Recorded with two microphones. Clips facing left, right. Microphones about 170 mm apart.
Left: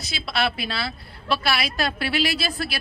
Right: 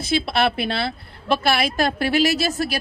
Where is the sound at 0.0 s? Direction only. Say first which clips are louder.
Right 6 dB; 50° right (ahead or behind).